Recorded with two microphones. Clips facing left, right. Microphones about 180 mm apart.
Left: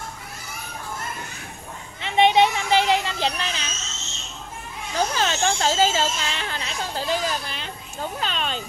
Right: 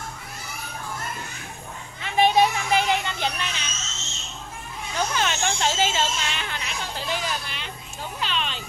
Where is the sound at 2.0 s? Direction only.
25° left (ahead or behind).